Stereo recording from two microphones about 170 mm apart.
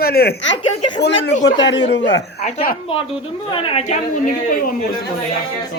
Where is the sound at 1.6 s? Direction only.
90° left.